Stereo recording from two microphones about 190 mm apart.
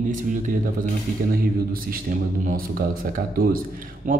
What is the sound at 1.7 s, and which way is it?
Speech, 50° right (ahead or behind).